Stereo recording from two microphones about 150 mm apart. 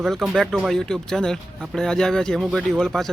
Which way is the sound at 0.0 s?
Centre (ahead or behind).